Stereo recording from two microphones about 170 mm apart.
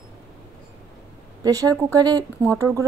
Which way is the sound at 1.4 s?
20° right (ahead or behind).